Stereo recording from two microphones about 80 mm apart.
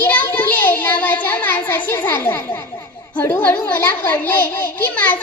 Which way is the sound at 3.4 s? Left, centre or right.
Left.